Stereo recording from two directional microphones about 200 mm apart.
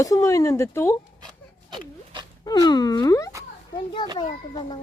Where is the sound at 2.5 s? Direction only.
20° left (ahead or behind).